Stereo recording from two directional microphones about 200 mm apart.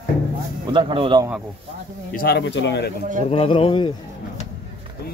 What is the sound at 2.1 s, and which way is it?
Speech, 55° left (ahead or behind).